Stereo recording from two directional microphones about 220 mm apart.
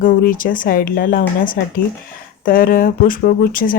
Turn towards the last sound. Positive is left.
turn(degrees=40)  # may be behind; listen again after turning